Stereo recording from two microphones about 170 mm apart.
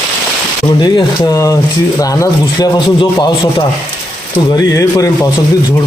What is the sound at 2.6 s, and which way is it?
Speech, 25° left (ahead or behind).